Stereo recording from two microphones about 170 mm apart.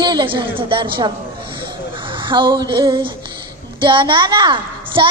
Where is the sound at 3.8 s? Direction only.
30° right (ahead or behind).